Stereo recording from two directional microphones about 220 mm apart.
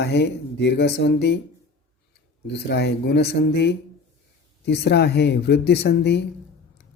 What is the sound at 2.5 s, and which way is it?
Speech, 50° left (ahead or behind).